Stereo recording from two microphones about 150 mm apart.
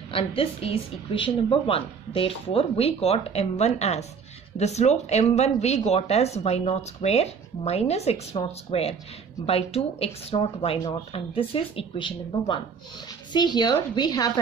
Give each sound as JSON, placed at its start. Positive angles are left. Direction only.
{"t": 0.1, "sound": "a woman's voice", "side_deg": 40}